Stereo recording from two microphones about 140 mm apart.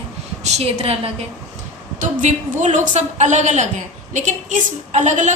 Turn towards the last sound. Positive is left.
turn(degrees=-60)  # may be behind; listen again after turning